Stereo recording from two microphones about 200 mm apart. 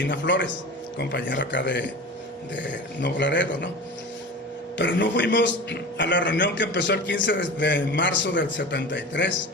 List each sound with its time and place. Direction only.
0.0 s a man's voice: 65° left (ahead or behind)
3.0 s a man's voice: 65° left (ahead or behind)
4.8 s a man's voice: 65° left (ahead or behind)